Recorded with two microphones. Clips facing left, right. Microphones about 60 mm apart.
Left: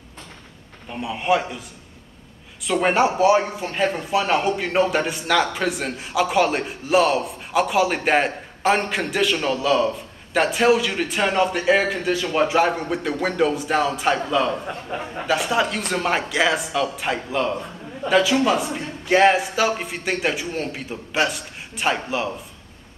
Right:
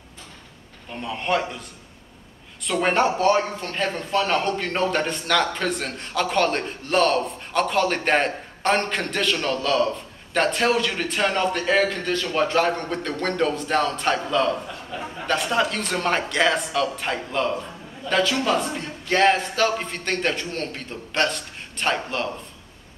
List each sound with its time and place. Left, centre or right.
0.8 s speech: centre
2.6 s speech: centre
14.7 s a man's voice: left
15.2 s speech: centre